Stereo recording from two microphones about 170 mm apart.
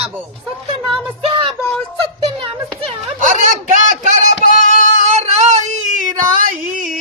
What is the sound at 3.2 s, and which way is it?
Speech, 50° right (ahead or behind).